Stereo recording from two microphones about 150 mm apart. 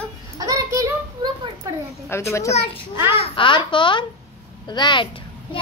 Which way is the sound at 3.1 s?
35° left (ahead or behind).